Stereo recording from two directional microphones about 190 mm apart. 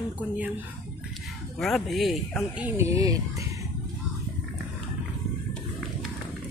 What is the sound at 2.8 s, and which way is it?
Speech, 15° right (ahead or behind).